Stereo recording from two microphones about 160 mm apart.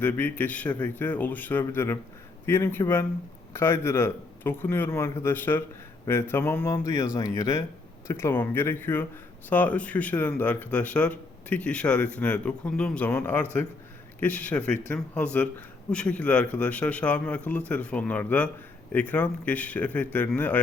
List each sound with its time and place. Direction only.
0.0 s a man's voice: 10° left (ahead or behind)